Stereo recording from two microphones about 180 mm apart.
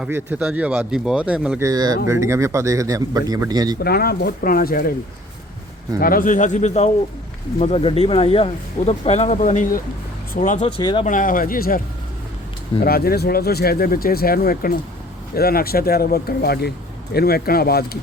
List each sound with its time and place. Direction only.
0.0 s speech: 10° right (ahead or behind)
1.6 s a man's voice: 20° right (ahead or behind)
3.8 s speech: 60° left (ahead or behind)
6.0 s speech: 50° left (ahead or behind)
10.8 s speech: 30° left (ahead or behind)
11.0 s speech: 50° left (ahead or behind)
12.8 s speech: 60° left (ahead or behind)